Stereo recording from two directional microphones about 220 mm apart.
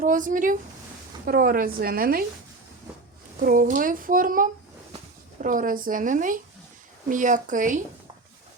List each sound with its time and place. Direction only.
0.0 s a woman's voice: 35° right (ahead or behind)
3.4 s a woman's voice: 40° right (ahead or behind)